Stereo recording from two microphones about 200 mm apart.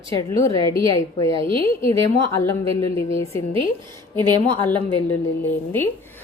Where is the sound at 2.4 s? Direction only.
10° left (ahead or behind).